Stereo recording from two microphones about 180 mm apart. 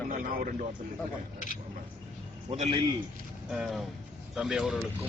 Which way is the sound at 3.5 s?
5° right (ahead or behind).